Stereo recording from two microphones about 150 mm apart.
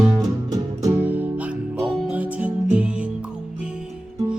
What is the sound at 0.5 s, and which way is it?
Music, 20° right (ahead or behind).